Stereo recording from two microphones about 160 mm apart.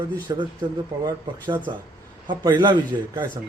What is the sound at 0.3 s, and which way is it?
Speech, 20° right (ahead or behind).